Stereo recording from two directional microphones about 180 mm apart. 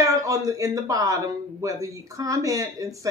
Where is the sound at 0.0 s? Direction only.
20° right (ahead or behind).